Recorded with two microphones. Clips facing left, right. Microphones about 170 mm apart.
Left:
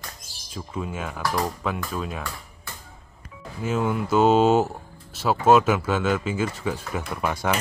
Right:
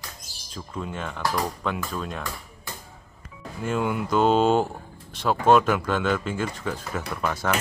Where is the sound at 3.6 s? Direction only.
5° left (ahead or behind).